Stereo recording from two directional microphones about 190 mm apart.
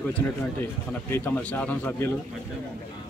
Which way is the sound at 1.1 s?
10° left (ahead or behind).